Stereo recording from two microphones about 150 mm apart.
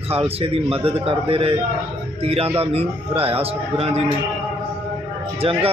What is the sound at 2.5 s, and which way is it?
A man's voice, 40° right (ahead or behind).